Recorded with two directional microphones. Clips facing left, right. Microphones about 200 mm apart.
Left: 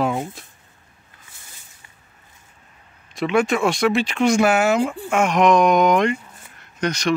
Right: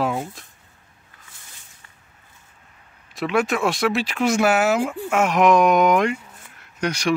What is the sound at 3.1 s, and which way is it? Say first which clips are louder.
Speech: left 2 dB; centre (ahead or behind).